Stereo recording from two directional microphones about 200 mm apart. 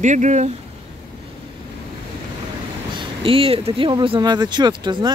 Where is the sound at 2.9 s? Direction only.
25° right (ahead or behind).